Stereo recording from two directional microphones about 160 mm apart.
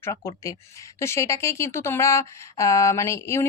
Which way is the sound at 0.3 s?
20° left (ahead or behind).